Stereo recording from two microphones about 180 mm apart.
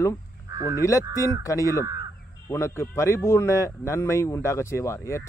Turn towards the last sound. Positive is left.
turn(degrees=15)  # may be behind; listen again after turning